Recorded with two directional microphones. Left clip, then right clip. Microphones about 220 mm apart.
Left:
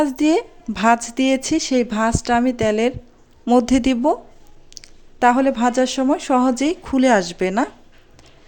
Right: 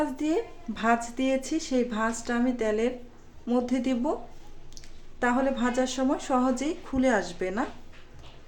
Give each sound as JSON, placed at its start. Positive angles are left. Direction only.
{"t": 0.0, "sound": "a woman's voice", "side_deg": 45}
{"t": 4.7, "sound": "a sound", "side_deg": 40}
{"t": 5.2, "sound": "a woman's voice", "side_deg": 40}